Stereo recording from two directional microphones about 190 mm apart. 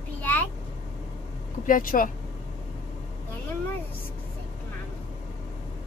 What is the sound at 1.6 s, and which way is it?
Speech, 45° left (ahead or behind).